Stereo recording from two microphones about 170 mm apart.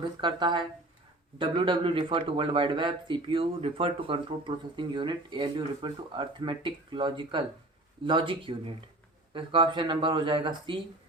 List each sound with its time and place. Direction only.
0.2 s speech: 25° right (ahead or behind)